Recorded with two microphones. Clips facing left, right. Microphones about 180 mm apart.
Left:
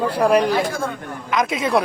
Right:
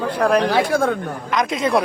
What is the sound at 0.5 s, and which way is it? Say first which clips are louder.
Speech: right 4 dB; 70° right (ahead or behind).